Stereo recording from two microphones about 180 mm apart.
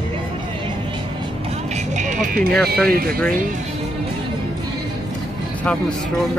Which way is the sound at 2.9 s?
55° right (ahead or behind).